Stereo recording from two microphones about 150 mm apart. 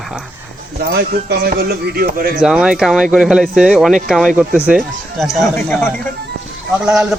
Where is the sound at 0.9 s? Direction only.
85° right.